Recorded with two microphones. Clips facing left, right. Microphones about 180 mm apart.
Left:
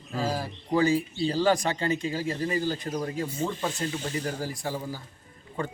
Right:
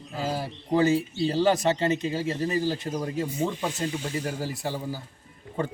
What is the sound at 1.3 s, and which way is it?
Speech, 25° right (ahead or behind).